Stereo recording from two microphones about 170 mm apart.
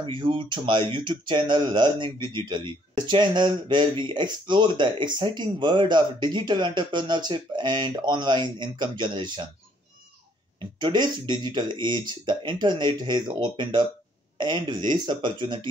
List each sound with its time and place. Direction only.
0.0 s speech: 30° right (ahead or behind)
10.8 s speech: 25° right (ahead or behind)